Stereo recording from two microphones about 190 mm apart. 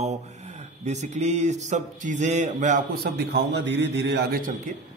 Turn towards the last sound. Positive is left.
turn(degrees=-50)  # may be behind; listen again after turning